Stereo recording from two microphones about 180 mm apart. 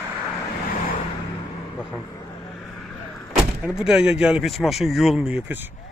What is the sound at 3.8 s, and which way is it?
Speech, 5° right (ahead or behind).